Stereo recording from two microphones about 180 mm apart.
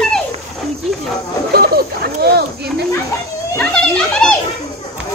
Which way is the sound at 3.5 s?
5° left (ahead or behind).